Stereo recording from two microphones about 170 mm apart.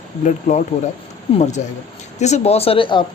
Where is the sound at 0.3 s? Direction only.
50° left (ahead or behind).